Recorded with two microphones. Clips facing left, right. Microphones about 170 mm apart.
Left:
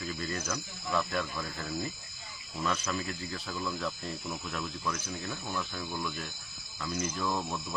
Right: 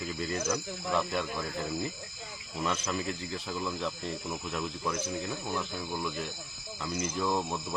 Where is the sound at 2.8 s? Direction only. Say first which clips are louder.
Right 2 dB; 20° right (ahead or behind).